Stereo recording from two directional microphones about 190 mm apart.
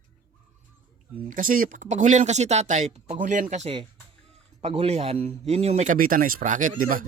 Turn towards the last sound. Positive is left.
turn(degrees=-45)  # may be behind; listen again after turning